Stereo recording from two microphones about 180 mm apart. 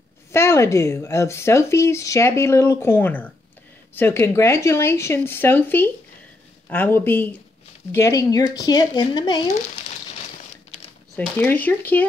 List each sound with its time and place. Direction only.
0.3 s speech: 15° left (ahead or behind)
11.1 s speech: 10° left (ahead or behind)